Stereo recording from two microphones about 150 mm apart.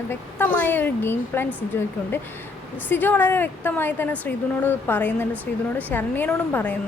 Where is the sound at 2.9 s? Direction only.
10° left (ahead or behind).